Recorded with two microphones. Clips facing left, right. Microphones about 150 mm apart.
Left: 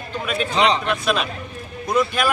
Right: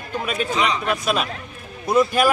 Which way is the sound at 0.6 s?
30° left (ahead or behind).